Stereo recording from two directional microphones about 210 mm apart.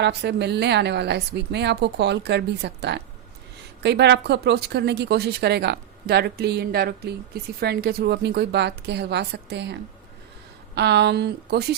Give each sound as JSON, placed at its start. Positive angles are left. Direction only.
{"t": 0.0, "sound": "speech", "side_deg": -55}
{"t": 10.8, "sound": "speech", "side_deg": -55}